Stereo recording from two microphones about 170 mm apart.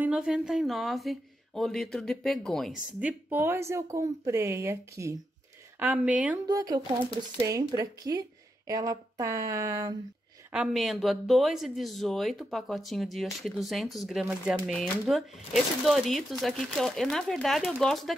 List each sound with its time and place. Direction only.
0.0 s speech: 5° right (ahead or behind)
6.4 s a woman's voice: 20° right (ahead or behind)
10.5 s speech: 5° right (ahead or behind)